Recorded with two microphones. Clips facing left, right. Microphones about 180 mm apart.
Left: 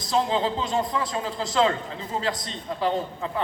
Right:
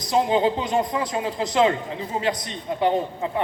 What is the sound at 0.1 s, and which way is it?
Speech, 20° right (ahead or behind).